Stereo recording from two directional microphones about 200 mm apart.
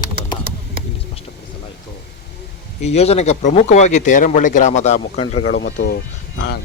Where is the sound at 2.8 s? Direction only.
30° left (ahead or behind).